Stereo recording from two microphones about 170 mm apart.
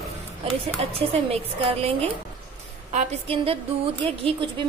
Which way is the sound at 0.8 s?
35° right (ahead or behind).